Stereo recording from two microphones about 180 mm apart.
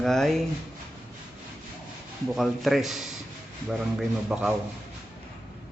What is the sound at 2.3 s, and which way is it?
Speech, centre (ahead or behind).